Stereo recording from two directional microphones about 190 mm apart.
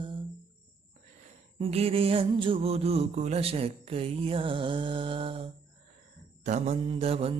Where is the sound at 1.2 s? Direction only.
35° right (ahead or behind).